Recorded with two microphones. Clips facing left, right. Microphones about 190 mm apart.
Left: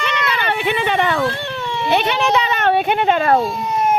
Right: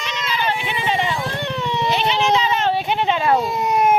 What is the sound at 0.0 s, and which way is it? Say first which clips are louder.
Run: left 3 dB; 65° left (ahead or behind).